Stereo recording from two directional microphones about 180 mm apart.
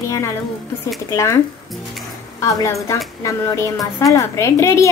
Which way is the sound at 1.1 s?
15° left (ahead or behind).